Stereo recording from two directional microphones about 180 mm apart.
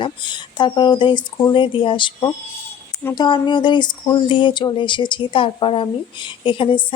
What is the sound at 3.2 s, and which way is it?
Speech, 25° left (ahead or behind).